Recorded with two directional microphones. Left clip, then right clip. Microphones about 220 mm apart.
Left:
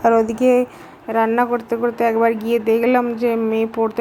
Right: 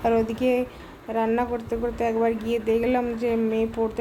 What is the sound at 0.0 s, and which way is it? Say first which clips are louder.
A woman's voice: left 8 dB; 20° left (ahead or behind).